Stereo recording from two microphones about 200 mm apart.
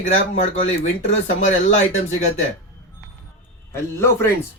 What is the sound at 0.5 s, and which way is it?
Speech, 30° left (ahead or behind).